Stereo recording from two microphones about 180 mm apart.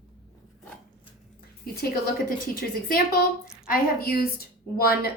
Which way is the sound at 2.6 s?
55° left (ahead or behind).